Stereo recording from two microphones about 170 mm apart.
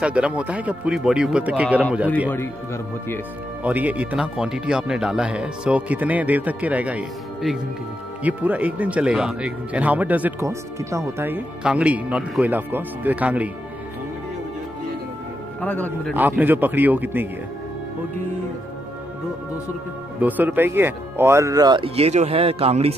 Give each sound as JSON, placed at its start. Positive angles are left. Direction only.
{"t": 0.0, "sound": "speech", "side_deg": -5}
{"t": 2.3, "sound": "speech", "side_deg": 15}
{"t": 3.6, "sound": "speech", "side_deg": -10}
{"t": 15.6, "sound": "speech", "side_deg": 10}
{"t": 16.2, "sound": "speech", "side_deg": -10}
{"t": 20.2, "sound": "speech", "side_deg": -10}